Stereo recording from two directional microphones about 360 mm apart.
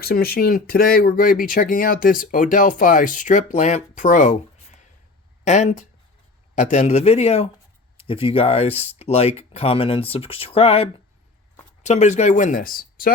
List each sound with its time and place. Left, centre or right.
0.0 s speech: left
5.5 s speech: centre